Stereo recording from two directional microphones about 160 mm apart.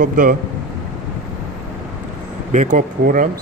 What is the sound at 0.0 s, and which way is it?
Speech, 60° right (ahead or behind).